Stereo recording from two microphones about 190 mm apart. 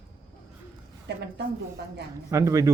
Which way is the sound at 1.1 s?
60° right (ahead or behind).